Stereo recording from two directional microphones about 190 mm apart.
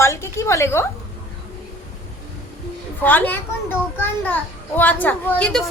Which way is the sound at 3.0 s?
10° left (ahead or behind).